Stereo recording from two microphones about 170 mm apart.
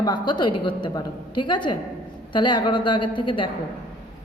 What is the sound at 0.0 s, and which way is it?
A woman's voice, 25° left (ahead or behind).